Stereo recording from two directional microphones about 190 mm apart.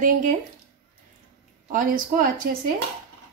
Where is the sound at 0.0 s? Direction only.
45° right (ahead or behind).